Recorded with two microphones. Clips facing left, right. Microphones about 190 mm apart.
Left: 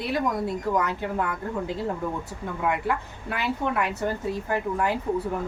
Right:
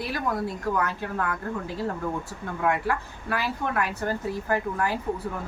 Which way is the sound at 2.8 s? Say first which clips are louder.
Even; 20° left (ahead or behind).